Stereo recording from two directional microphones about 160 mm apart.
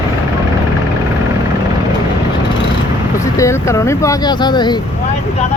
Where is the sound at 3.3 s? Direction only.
20° left (ahead or behind).